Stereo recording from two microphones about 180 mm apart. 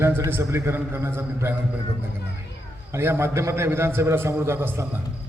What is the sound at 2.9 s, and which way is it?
A man's voice, 15° right (ahead or behind).